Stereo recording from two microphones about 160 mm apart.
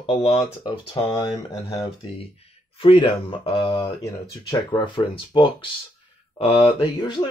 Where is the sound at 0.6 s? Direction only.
30° left (ahead or behind).